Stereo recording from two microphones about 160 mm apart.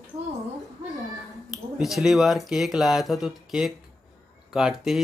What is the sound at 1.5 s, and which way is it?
Speech, centre (ahead or behind).